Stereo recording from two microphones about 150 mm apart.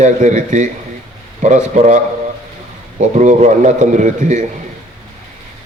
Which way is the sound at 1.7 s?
55° right (ahead or behind).